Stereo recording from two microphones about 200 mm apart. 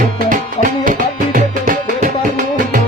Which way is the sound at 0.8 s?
40° right (ahead or behind).